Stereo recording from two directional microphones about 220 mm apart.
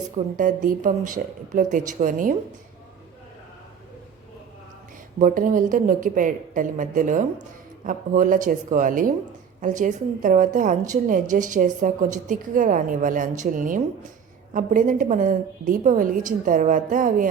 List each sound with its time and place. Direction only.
0.3 s a woman's voice: 35° right (ahead or behind)
5.2 s a woman's voice: 35° right (ahead or behind)